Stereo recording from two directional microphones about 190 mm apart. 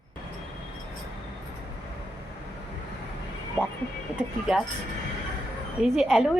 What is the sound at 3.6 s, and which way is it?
Speech, centre (ahead or behind).